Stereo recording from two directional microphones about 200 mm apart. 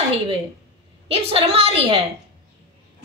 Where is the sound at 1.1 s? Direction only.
30° right (ahead or behind).